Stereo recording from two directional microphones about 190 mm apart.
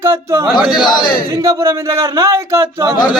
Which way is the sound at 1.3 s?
15° right (ahead or behind).